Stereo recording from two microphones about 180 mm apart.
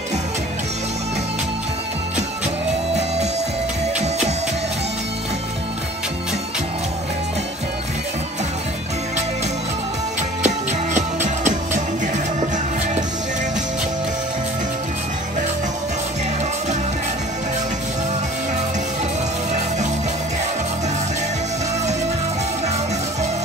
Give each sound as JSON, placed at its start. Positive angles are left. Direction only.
{"t": 10.4, "sound": "music", "side_deg": -40}